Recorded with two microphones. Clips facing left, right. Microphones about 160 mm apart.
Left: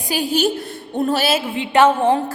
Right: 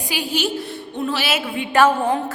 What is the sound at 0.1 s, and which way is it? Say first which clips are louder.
A woman's voice: left 5 dB; 40° left (ahead or behind).